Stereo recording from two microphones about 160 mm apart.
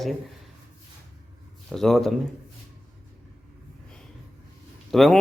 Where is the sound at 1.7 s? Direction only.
Centre (ahead or behind).